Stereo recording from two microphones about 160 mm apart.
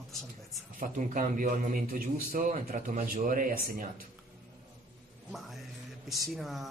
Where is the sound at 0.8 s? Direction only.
60° right (ahead or behind).